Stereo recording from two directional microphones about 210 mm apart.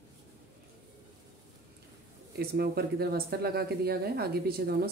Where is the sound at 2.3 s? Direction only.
50° right (ahead or behind).